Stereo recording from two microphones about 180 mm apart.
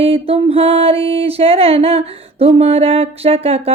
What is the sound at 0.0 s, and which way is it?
Speech, 30° right (ahead or behind).